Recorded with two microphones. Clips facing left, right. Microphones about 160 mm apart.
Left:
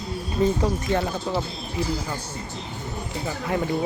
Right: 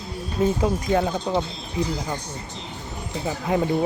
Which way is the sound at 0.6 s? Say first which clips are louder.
Right 2 dB; 10° right (ahead or behind).